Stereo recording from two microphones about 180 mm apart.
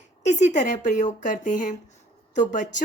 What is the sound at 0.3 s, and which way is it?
A woman's voice, 40° left (ahead or behind).